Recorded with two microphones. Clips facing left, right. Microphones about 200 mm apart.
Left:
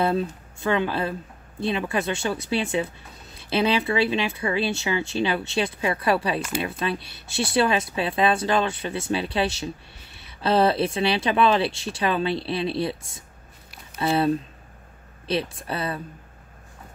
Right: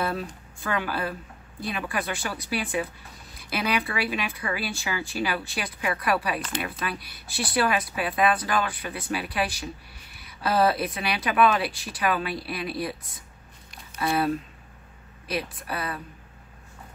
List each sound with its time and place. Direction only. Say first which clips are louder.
0.0 s speech: left 6 dB; 25° left (ahead or behind)